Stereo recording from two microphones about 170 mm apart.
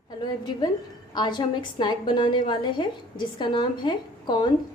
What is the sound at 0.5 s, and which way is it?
A woman's voice, 25° left (ahead or behind).